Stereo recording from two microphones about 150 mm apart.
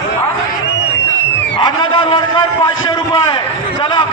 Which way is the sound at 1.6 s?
30° left (ahead or behind).